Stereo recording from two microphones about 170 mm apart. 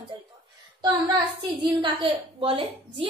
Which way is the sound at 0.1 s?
30° right (ahead or behind).